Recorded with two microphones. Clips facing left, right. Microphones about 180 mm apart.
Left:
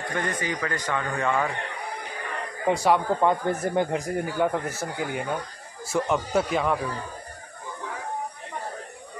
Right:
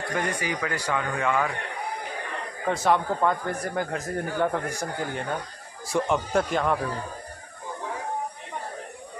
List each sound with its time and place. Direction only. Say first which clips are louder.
0.2 s a man's voice: left 1 dB; 10° right (ahead or behind)
2.6 s speech: left 2 dB; 15° left (ahead or behind)
4.0 s speech: left 1 dB; 5° left (ahead or behind)